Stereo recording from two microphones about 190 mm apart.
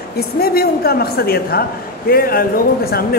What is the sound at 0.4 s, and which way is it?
Speech, 55° left (ahead or behind).